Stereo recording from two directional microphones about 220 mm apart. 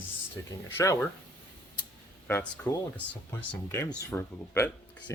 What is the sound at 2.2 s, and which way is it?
Speech, 10° left (ahead or behind).